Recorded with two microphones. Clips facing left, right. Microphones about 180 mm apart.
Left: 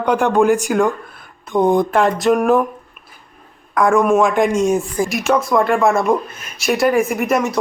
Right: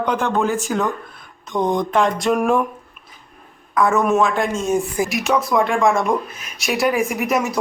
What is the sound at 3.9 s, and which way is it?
Speech, 10° left (ahead or behind).